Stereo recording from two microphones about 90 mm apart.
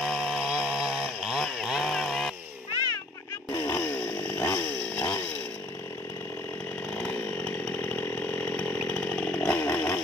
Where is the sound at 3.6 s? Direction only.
25° left (ahead or behind).